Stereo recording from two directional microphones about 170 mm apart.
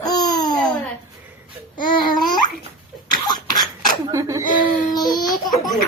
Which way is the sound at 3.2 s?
25° left (ahead or behind).